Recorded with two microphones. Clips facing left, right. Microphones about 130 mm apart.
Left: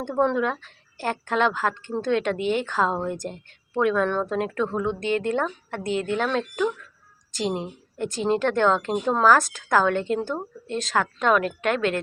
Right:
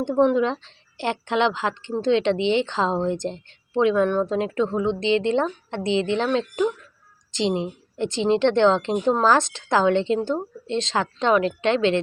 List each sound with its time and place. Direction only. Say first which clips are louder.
0.0 s a woman's voice: right 4 dB; 15° right (ahead or behind)
5.9 s speech: right 3 dB; 90° right
6.1 s a woman's voice: right 2 dB; 20° right (ahead or behind)